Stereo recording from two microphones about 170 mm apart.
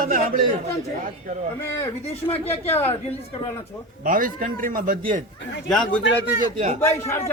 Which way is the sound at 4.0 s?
55° right (ahead or behind).